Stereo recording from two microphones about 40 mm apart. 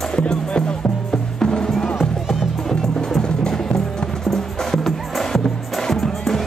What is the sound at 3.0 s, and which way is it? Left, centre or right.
Music, centre.